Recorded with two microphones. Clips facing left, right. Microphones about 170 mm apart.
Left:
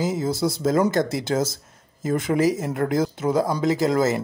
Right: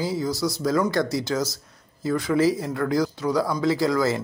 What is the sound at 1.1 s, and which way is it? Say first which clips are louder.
Speech: left 2 dB; 50° left (ahead or behind).